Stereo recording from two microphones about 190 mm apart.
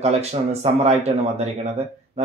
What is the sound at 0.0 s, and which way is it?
Speech, 35° right (ahead or behind).